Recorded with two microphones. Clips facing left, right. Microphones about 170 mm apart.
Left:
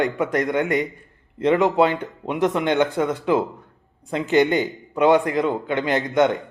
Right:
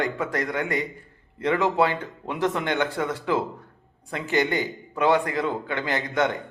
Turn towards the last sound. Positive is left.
turn(degrees=20)  # may be behind; listen again after turning